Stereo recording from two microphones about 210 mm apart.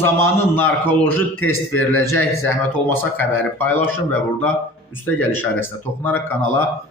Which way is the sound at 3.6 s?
10° left (ahead or behind).